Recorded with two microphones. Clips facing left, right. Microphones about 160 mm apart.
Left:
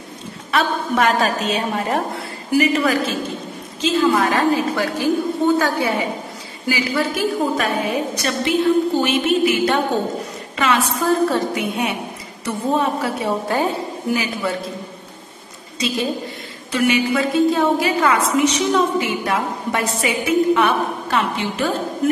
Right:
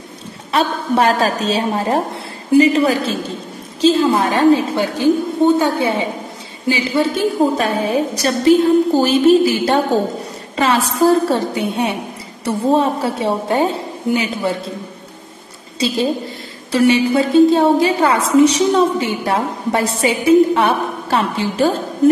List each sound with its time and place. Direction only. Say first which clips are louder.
0.5 s a woman's voice: right 3 dB; 30° right (ahead or behind)
16.7 s a woman's voice: right 5 dB; 30° right (ahead or behind)